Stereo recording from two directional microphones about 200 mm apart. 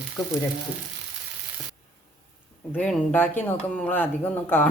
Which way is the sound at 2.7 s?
10° left (ahead or behind).